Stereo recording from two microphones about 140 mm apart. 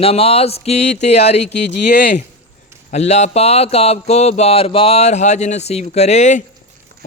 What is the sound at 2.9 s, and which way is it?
Speech, 55° left (ahead or behind).